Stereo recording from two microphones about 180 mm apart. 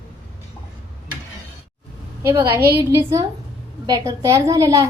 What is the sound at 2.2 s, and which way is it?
A woman's voice, 15° right (ahead or behind).